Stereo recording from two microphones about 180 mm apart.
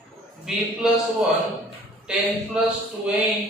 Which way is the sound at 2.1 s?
5° right (ahead or behind).